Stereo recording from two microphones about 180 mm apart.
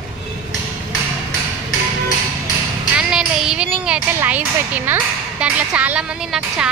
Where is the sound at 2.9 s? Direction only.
5° right (ahead or behind).